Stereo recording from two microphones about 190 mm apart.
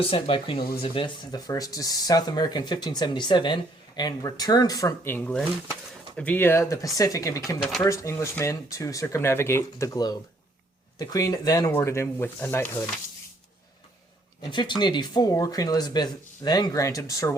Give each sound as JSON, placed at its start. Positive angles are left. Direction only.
{"t": 0.0, "sound": "speech", "side_deg": 30}
{"t": 14.5, "sound": "speech", "side_deg": 25}